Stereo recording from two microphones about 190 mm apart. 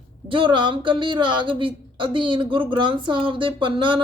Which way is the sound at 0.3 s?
25° right (ahead or behind).